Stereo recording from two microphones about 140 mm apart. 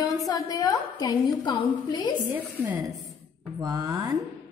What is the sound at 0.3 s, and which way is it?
A woman's voice, 25° left (ahead or behind).